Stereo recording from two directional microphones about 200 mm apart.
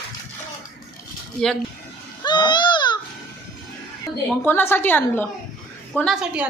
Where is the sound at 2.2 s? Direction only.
20° left (ahead or behind).